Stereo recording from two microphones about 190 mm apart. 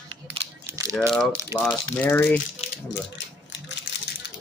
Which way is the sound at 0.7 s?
15° right (ahead or behind).